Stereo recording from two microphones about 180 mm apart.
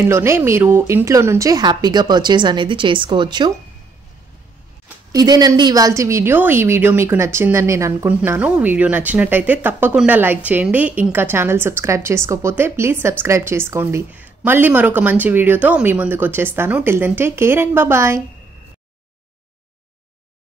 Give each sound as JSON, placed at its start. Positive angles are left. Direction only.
{"t": 0.0, "sound": "a woman's voice", "side_deg": -15}
{"t": 5.1, "sound": "a woman's voice", "side_deg": -20}